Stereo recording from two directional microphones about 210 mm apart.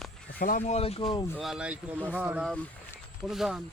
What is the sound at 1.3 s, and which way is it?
Speech, 5° right (ahead or behind).